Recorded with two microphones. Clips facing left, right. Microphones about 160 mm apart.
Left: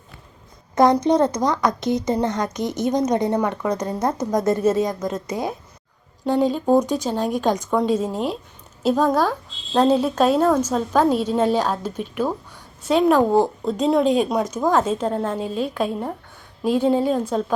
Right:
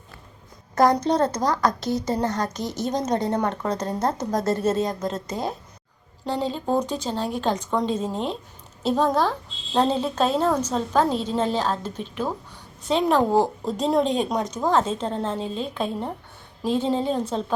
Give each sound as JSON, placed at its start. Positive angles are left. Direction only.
{"t": 1.0, "sound": "a woman's voice", "side_deg": 15}
{"t": 2.6, "sound": "a woman's voice", "side_deg": 55}
{"t": 2.8, "sound": "a woman's voice", "side_deg": 15}